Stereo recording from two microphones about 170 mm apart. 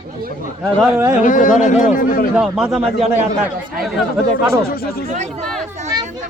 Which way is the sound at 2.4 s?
5° right (ahead or behind).